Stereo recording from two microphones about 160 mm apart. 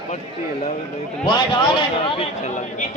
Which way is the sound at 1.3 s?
30° left (ahead or behind).